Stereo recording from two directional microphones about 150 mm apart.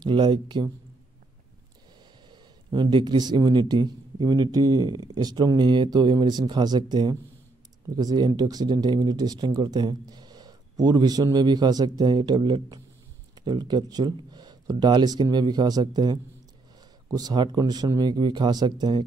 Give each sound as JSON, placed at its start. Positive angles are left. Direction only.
{"t": 0.0, "sound": "speech", "side_deg": -30}
{"t": 2.3, "sound": "speech", "side_deg": -30}